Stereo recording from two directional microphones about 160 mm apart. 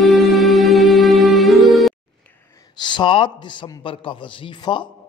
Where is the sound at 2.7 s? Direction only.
30° left (ahead or behind).